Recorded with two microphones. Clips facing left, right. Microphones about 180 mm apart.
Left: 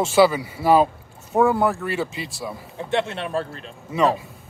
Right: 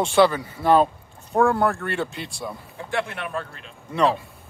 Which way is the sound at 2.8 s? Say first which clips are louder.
Left 4 dB; 25° left (ahead or behind).